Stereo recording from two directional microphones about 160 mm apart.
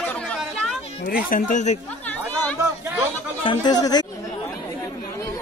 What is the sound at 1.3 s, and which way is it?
Speech, 55° left (ahead or behind).